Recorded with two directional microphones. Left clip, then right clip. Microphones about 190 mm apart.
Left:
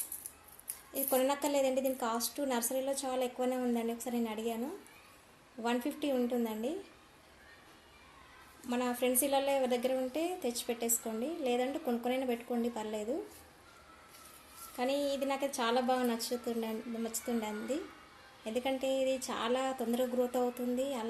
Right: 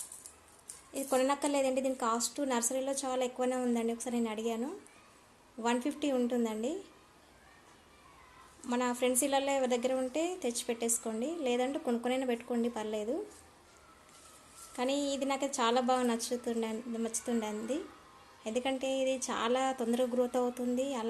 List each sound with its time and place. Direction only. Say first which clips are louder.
0.9 s a woman's voice: right 1 dB; 15° right (ahead or behind)
5.6 s a woman's voice: right 2 dB; 15° right (ahead or behind)
8.6 s a woman's voice: right 2 dB; 15° right (ahead or behind)
14.8 s a woman's voice: even; 20° right (ahead or behind)